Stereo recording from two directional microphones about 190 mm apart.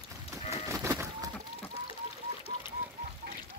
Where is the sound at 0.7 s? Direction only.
15° right (ahead or behind).